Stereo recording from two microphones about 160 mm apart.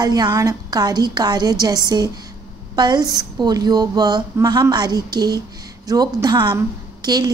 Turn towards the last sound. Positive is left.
turn(degrees=-25)  # may be behind; listen again after turning